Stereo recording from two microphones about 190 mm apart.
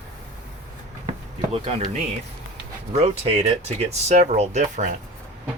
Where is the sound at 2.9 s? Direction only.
35° right (ahead or behind).